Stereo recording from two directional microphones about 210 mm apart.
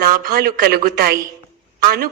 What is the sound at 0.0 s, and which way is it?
Speech, 45° right (ahead or behind).